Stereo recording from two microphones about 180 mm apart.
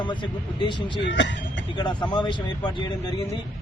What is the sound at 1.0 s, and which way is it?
Speech, 85° left.